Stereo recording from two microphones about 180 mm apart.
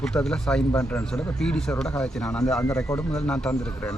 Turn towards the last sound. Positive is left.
turn(degrees=5)  # may be behind; listen again after turning